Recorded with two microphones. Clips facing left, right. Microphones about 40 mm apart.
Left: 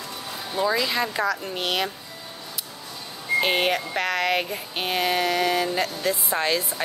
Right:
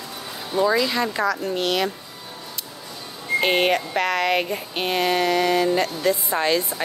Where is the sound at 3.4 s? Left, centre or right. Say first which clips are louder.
Right 6 dB; centre.